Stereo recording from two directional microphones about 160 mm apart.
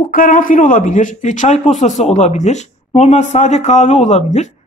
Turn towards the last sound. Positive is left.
turn(degrees=45)  # may be behind; listen again after turning